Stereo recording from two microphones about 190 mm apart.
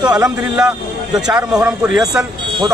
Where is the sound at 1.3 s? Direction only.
5° right (ahead or behind).